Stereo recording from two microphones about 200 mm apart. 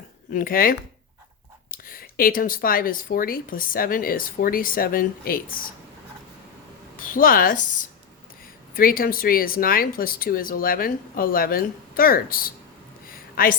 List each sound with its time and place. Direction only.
0.3 s speech: 45° left (ahead or behind)
6.9 s speech: 45° left (ahead or behind)
13.1 s a sound: 45° left (ahead or behind)